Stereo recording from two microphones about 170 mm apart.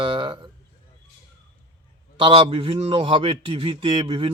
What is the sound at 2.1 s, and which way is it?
Speech, 30° right (ahead or behind).